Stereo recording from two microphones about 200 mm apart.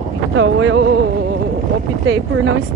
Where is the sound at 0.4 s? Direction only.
70° right (ahead or behind).